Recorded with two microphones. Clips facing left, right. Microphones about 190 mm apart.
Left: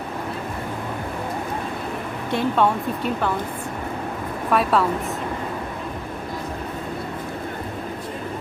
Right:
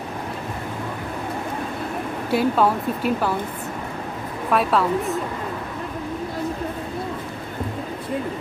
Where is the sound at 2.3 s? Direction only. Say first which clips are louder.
Right 1 dB; 5° right (ahead or behind).